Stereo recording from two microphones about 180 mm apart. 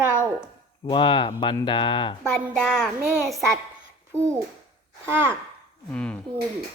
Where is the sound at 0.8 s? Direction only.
25° left (ahead or behind).